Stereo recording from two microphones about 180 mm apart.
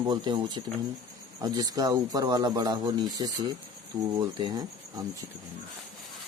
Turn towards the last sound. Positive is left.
turn(degrees=-20)  # may be behind; listen again after turning